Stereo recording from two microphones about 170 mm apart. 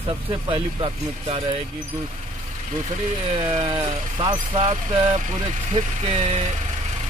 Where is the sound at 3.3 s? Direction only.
30° right (ahead or behind).